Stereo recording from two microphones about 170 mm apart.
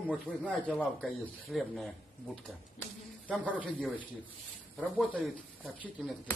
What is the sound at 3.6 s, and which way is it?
Speech, 10° right (ahead or behind).